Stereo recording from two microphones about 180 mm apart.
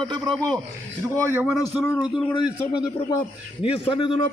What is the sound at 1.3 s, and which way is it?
Speech, 10° right (ahead or behind).